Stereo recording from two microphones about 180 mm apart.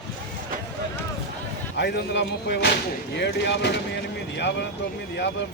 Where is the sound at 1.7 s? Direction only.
70° left (ahead or behind).